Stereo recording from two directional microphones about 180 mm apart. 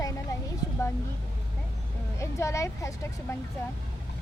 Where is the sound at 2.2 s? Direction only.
15° left (ahead or behind).